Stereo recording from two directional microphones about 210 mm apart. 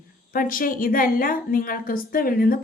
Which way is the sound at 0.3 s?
40° left (ahead or behind).